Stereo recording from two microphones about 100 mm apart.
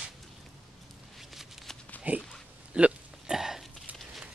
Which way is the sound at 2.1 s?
15° right (ahead or behind).